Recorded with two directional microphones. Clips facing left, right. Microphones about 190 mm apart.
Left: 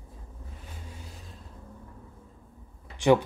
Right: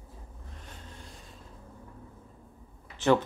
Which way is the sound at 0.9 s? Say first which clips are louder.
Left 2 dB; 5° left (ahead or behind).